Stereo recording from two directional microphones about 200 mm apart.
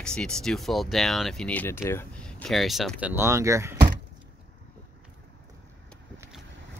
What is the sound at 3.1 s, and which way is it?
Speech, 15° right (ahead or behind).